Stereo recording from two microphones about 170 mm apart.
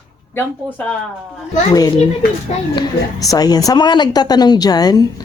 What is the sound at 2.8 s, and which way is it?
A woman's voice, 20° left (ahead or behind).